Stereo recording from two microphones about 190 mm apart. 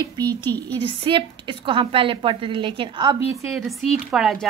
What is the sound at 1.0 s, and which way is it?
A woman's voice, 25° right (ahead or behind).